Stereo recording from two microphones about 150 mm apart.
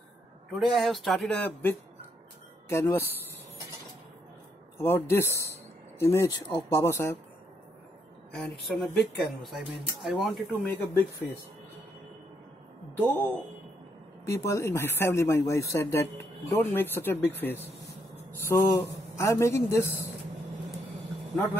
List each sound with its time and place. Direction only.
0.5 s speech: centre (ahead or behind)
4.7 s speech: 15° left (ahead or behind)
8.3 s a woman's voice: centre (ahead or behind)
10.6 s speech: 15° left (ahead or behind)
12.9 s speech: 15° left (ahead or behind)